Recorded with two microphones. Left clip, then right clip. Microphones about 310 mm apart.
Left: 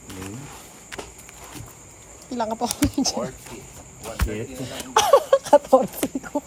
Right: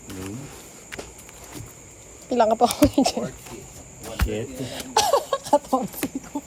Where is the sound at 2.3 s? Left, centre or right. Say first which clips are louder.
Right 7 dB; centre.